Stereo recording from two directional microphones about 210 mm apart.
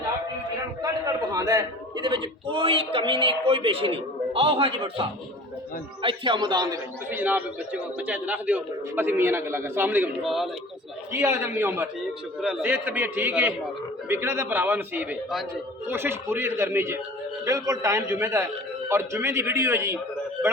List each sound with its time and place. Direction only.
0.8 s a man's voice: 15° right (ahead or behind)
7.1 s a man's voice: 10° right (ahead or behind)
11.1 s a man's voice: 10° right (ahead or behind)